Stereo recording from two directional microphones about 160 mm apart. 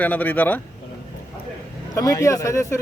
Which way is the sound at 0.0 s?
10° left (ahead or behind).